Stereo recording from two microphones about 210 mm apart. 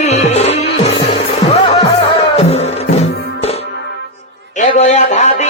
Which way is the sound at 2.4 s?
30° left (ahead or behind).